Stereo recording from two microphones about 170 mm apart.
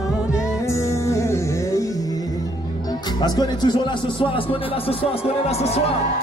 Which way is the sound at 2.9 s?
25° left (ahead or behind).